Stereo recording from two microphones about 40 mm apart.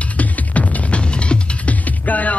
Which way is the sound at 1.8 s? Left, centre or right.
Left.